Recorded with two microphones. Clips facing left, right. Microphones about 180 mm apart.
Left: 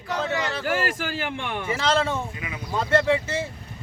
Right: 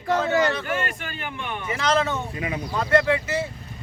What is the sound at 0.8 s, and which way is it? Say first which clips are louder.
Speech: left 4 dB; 90° left.